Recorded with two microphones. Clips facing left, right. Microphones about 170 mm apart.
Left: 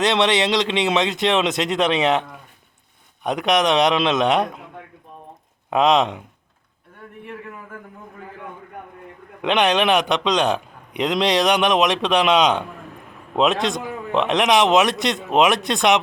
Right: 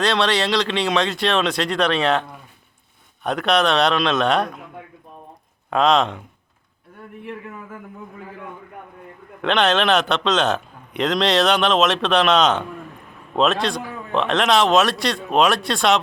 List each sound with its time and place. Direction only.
0.0 s a man's voice: 20° left (ahead or behind)
3.2 s a man's voice: 15° left (ahead or behind)
5.7 s a man's voice: 15° left (ahead or behind)
9.4 s a man's voice: 15° left (ahead or behind)